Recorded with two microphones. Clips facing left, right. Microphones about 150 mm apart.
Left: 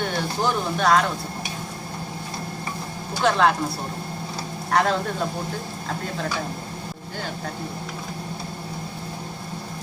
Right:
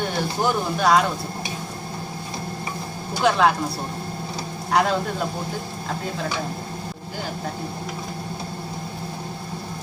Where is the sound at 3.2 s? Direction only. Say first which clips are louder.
Right 1 dB; 5° right (ahead or behind).